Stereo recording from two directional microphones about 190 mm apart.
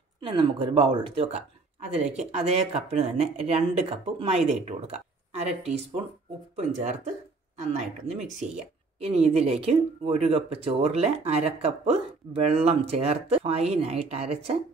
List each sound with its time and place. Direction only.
0.2 s a woman's voice: 25° right (ahead or behind)
6.5 s speech: 35° right (ahead or behind)